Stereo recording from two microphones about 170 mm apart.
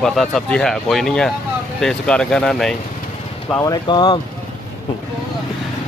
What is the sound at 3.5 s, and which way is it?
Speech, 20° left (ahead or behind).